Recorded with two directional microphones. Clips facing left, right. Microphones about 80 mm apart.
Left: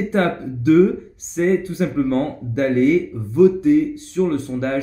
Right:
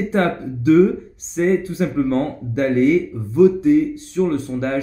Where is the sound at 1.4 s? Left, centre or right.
Centre.